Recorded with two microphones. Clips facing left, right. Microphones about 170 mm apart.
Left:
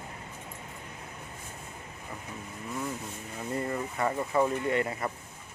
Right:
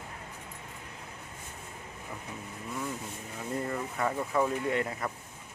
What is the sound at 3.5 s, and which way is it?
Speech, centre (ahead or behind).